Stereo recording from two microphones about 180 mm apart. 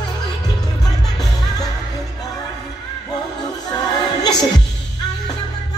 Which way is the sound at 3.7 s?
20° left (ahead or behind).